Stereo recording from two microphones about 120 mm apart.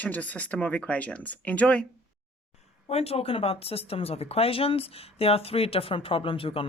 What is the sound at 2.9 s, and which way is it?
Speech, 55° left (ahead or behind).